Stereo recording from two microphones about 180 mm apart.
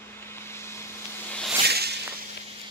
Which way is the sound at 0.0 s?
15° left (ahead or behind).